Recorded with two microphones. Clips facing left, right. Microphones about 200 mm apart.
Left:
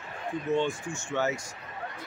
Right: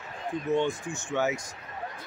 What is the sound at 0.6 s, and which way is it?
Speech, 20° right (ahead or behind).